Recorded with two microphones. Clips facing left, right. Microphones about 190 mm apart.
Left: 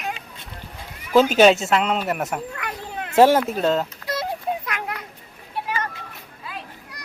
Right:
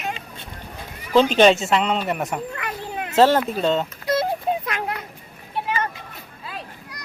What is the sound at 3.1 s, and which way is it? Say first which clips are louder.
Speech: left 1 dB; 10° left (ahead or behind).